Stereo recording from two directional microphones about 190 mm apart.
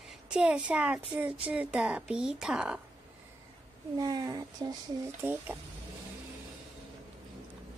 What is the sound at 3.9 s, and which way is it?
A child's voice, 20° right (ahead or behind).